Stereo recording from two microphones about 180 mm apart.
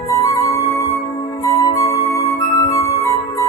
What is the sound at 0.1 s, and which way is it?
Music, 15° left (ahead or behind).